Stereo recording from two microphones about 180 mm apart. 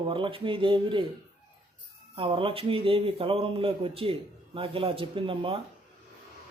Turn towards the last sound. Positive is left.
turn(degrees=-30)  # may be behind; listen again after turning